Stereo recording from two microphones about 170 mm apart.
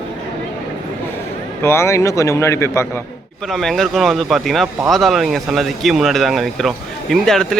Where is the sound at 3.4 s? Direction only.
Centre (ahead or behind).